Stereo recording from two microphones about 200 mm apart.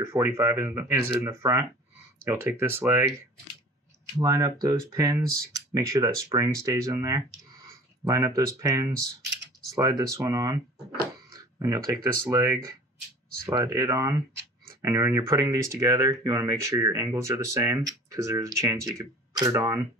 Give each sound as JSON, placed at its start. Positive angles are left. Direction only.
{"t": 0.0, "sound": "speech", "side_deg": -15}
{"t": 4.2, "sound": "speech", "side_deg": -15}